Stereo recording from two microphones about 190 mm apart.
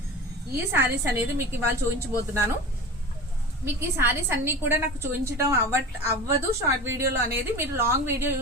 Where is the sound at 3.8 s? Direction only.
15° right (ahead or behind).